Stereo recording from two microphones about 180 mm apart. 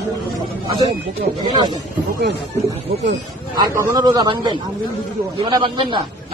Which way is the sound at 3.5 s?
20° right (ahead or behind).